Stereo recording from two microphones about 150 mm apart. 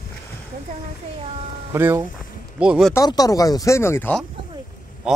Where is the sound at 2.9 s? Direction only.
25° left (ahead or behind).